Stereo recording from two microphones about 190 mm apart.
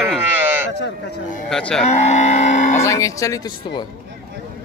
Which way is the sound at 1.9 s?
35° left (ahead or behind).